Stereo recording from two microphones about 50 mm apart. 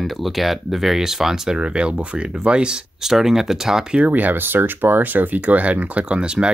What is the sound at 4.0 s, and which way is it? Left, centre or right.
Speech, right.